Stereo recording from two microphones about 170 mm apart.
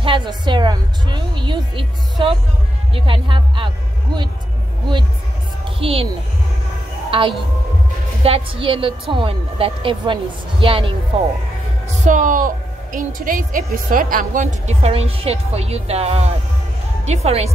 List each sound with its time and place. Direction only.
0.0 s a woman's voice: 30° right (ahead or behind)
5.8 s a woman's voice: 35° right (ahead or behind)
7.1 s speech: 30° right (ahead or behind)
11.9 s a woman's voice: 45° right (ahead or behind)